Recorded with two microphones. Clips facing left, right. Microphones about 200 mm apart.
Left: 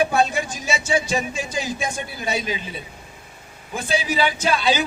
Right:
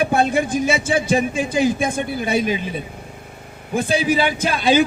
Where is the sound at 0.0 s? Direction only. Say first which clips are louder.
Right 2 dB; 55° right (ahead or behind).